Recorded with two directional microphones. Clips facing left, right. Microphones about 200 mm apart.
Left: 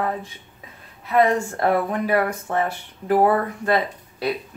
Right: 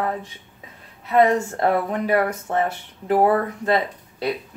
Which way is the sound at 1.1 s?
25° right (ahead or behind).